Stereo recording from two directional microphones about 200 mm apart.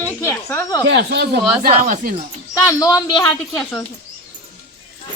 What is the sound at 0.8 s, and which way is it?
Speech, 60° right (ahead or behind).